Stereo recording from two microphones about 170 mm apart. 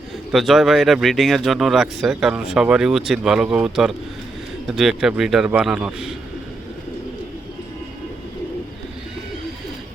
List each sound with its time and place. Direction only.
0.3 s speech: centre (ahead or behind)